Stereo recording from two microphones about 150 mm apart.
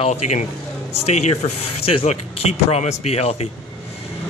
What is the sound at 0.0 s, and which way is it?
Speech, 45° left (ahead or behind).